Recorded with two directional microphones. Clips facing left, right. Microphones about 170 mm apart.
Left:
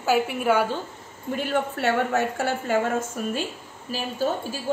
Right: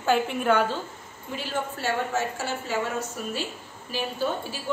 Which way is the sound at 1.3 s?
55° left (ahead or behind).